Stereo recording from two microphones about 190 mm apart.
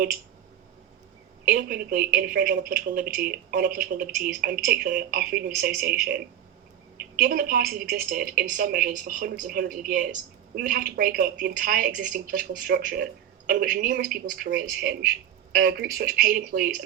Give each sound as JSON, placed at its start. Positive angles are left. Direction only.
{"t": 1.5, "sound": "speech", "side_deg": -50}
{"t": 15.5, "sound": "speech", "side_deg": -55}